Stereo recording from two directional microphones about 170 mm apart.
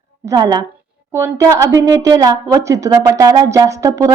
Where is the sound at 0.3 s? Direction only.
20° right (ahead or behind).